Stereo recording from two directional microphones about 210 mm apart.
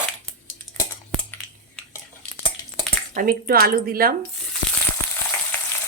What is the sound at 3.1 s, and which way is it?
A woman's voice, 45° right (ahead or behind).